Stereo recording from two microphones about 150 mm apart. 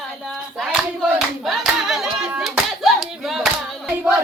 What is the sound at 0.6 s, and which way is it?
Hands, 5° right (ahead or behind).